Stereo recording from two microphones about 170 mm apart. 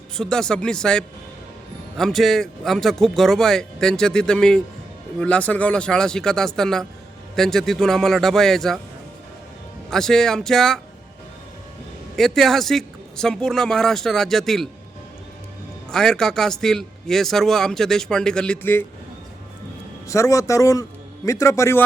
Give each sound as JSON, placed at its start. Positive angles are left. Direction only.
{"t": 0.2, "sound": "a man's voice", "side_deg": 5}
{"t": 9.9, "sound": "a man's voice", "side_deg": 5}
{"t": 12.1, "sound": "a man's voice", "side_deg": 0}
{"t": 15.9, "sound": "a man's voice", "side_deg": 5}
{"t": 20.1, "sound": "a man's voice", "side_deg": 20}